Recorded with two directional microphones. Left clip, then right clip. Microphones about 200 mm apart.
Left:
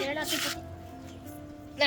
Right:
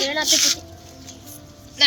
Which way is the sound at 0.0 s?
45° right (ahead or behind).